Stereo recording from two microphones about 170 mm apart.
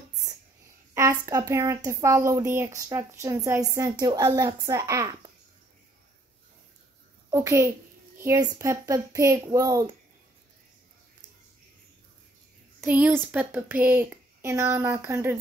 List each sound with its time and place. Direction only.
1.2 s speech: 20° right (ahead or behind)
7.2 s a child's voice: 20° right (ahead or behind)
12.8 s speech: 10° right (ahead or behind)